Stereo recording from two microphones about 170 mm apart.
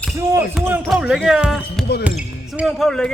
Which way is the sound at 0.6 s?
5° right (ahead or behind).